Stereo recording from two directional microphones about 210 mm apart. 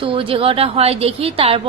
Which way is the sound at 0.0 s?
25° right (ahead or behind).